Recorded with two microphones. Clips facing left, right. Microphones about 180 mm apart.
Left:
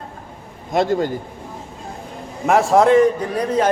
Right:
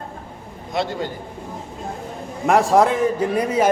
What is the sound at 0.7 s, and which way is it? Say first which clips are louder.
Speech: left 6 dB; 45° left (ahead or behind).